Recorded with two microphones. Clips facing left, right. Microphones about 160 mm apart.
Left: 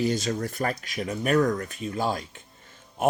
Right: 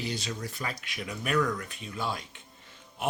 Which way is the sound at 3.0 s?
45° left (ahead or behind).